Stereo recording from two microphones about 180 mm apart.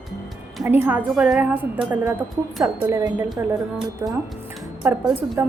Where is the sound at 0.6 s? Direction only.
10° right (ahead or behind).